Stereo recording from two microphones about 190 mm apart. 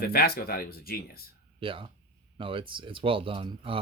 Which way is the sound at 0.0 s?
50° left (ahead or behind).